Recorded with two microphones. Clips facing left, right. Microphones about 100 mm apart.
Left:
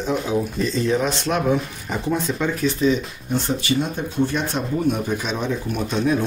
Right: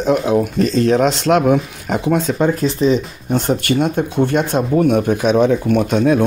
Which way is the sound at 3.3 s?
60° right (ahead or behind).